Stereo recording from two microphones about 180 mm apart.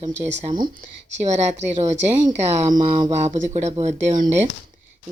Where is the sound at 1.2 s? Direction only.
40° right (ahead or behind).